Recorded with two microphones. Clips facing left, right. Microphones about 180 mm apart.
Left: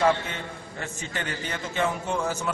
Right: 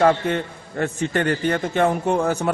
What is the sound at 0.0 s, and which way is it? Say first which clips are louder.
A man's voice: right 6 dB; 55° right (ahead or behind).